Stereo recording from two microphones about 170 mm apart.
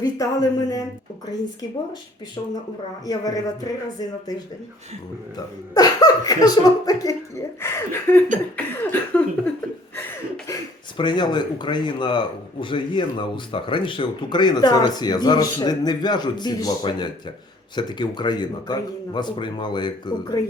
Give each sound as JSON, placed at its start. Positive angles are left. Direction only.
{"t": 0.0, "sound": "speech", "side_deg": 20}
{"t": 3.1, "sound": "speech", "side_deg": 20}
{"t": 5.7, "sound": "speech", "side_deg": 20}
{"t": 8.5, "sound": "a sound", "side_deg": 10}
{"t": 10.9, "sound": "speech", "side_deg": 25}